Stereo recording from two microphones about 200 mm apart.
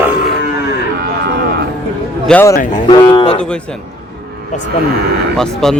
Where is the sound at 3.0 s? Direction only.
20° left (ahead or behind).